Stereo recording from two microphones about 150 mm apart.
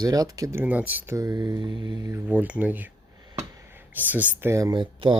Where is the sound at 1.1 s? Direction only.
25° right (ahead or behind).